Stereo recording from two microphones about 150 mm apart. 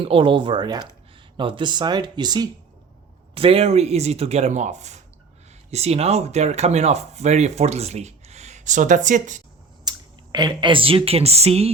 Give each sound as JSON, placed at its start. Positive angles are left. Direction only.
{"t": 0.0, "sound": "speech", "side_deg": -35}
{"t": 3.3, "sound": "speech", "side_deg": -40}
{"t": 9.9, "sound": "a sound", "side_deg": -25}
{"t": 10.3, "sound": "speech", "side_deg": -30}